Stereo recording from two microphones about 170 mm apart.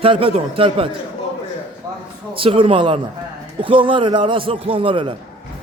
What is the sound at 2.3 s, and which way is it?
A man's voice, 30° right (ahead or behind).